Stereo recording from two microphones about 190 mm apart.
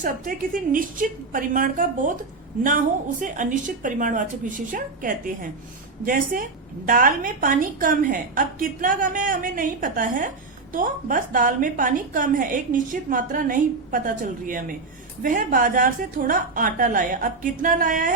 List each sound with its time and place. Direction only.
0.0 s a woman's voice: 45° right (ahead or behind)